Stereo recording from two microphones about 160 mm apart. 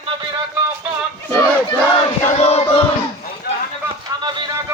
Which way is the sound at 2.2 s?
40° left (ahead or behind).